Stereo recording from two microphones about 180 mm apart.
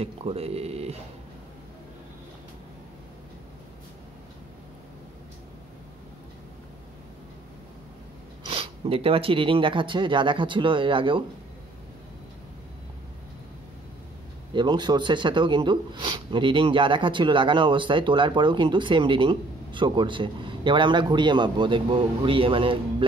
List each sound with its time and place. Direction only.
0.0 s speech: 35° right (ahead or behind)
8.5 s speech: 30° right (ahead or behind)
14.5 s speech: 25° right (ahead or behind)